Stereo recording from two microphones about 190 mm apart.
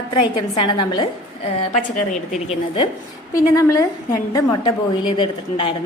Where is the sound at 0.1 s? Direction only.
25° left (ahead or behind).